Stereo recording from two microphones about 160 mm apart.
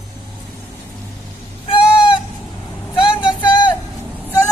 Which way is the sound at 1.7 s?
35° left (ahead or behind).